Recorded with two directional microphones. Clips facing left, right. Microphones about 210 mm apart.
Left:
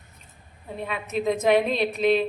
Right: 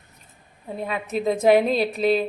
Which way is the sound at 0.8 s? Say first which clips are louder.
Right 2 dB; 35° right (ahead or behind).